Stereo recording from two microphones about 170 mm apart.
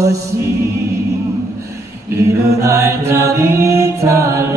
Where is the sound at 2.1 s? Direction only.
15° right (ahead or behind).